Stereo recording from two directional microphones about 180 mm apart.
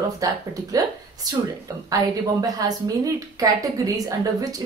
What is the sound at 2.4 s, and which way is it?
A woman's voice, 20° right (ahead or behind).